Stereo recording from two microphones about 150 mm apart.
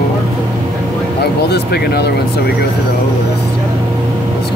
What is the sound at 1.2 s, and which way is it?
Speech, 90° left.